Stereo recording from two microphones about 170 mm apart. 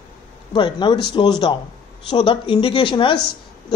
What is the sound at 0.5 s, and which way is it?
Speech, 25° left (ahead or behind).